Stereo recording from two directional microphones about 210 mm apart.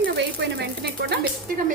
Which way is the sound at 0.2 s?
55° right (ahead or behind).